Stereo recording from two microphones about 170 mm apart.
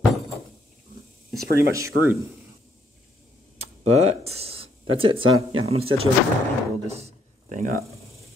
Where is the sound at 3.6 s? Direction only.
40° right (ahead or behind).